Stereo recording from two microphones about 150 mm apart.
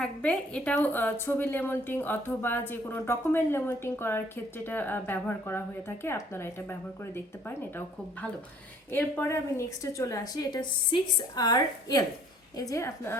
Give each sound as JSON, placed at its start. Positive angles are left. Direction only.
{"t": 0.0, "sound": "a woman's voice", "side_deg": 5}